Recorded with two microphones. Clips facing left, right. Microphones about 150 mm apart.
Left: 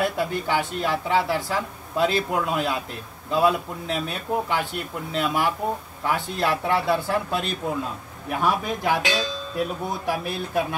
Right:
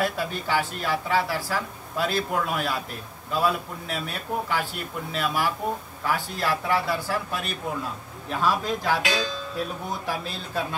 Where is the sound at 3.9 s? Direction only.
20° left (ahead or behind).